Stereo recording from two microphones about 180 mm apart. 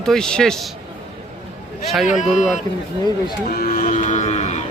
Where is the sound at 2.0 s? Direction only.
45° left (ahead or behind).